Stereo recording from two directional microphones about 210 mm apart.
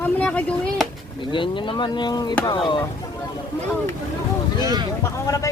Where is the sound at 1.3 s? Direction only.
25° left (ahead or behind).